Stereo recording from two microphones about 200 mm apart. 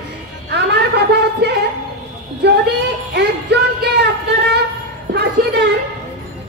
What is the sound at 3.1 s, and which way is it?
Music, 60° right (ahead or behind).